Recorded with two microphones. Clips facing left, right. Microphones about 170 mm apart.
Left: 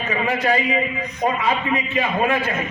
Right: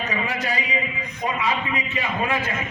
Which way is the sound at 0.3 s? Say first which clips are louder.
Left 7 dB; 50° left (ahead or behind).